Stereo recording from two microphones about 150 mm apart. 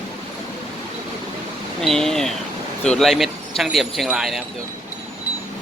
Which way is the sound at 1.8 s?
5° left (ahead or behind).